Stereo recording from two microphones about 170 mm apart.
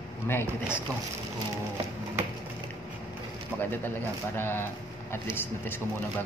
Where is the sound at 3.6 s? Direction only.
10° left (ahead or behind).